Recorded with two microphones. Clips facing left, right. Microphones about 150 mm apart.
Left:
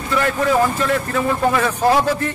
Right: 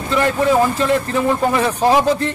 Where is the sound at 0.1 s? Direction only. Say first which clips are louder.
Right 2 dB; 20° right (ahead or behind).